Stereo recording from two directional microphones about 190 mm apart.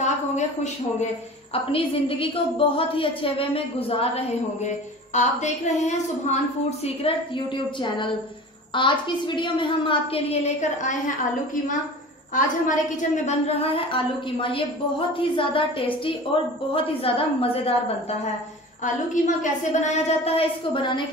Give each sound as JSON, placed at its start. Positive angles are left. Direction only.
{"t": 1.5, "sound": "a woman's voice", "side_deg": 30}
{"t": 12.6, "sound": "a woman's voice", "side_deg": 40}
{"t": 19.2, "sound": "a woman's voice", "side_deg": 40}